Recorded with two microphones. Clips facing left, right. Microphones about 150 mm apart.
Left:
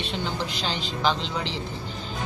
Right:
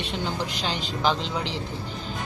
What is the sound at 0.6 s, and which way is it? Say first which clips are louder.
Speech: right 1 dB; 10° right (ahead or behind).